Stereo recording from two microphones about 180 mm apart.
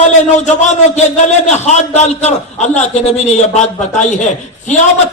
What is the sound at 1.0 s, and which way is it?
A man's voice, 40° left (ahead or behind).